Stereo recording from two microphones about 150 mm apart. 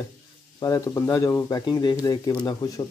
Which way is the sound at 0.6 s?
20° left (ahead or behind).